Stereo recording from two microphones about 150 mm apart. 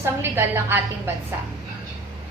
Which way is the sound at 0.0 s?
15° right (ahead or behind).